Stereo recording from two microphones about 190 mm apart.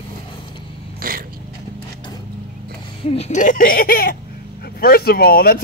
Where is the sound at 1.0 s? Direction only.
50° right (ahead or behind).